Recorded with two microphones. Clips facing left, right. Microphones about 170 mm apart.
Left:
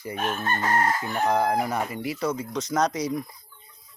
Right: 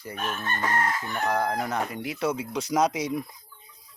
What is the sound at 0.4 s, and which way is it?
Chicken, 35° left (ahead or behind).